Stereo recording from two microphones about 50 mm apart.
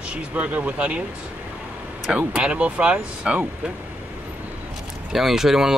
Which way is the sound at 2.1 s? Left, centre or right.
Right.